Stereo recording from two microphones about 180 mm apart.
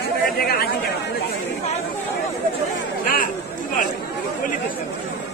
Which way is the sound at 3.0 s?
50° left (ahead or behind).